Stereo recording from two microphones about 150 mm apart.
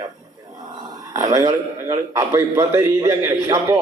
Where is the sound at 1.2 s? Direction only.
20° right (ahead or behind).